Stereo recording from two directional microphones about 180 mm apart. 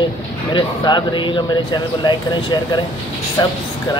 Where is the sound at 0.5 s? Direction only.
25° left (ahead or behind).